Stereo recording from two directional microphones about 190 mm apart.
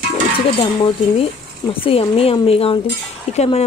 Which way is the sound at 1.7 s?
30° left (ahead or behind).